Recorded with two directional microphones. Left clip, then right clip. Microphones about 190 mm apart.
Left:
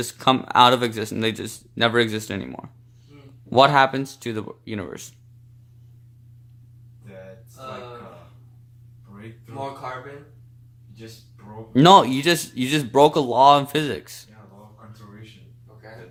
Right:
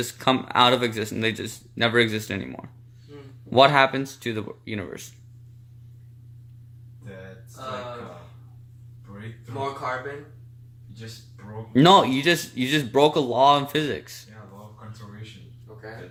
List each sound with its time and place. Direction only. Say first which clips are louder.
0.0 s speech: left 3 dB; 15° left (ahead or behind)
11.7 s a man's voice: left 3 dB; 20° left (ahead or behind)